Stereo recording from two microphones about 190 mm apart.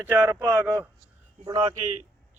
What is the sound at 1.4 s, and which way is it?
Speech, 30° right (ahead or behind).